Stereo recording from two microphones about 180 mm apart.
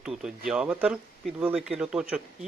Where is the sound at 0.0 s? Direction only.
5° right (ahead or behind).